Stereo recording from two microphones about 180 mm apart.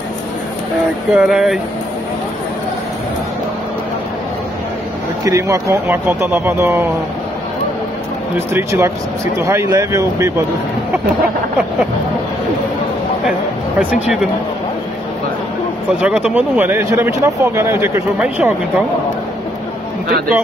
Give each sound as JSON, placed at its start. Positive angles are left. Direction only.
{"t": 1.1, "sound": "speech", "side_deg": -5}
{"t": 5.2, "sound": "speech", "side_deg": -15}
{"t": 8.5, "sound": "speech", "side_deg": -15}
{"t": 13.7, "sound": "speech", "side_deg": -5}
{"t": 16.0, "sound": "speech", "side_deg": -5}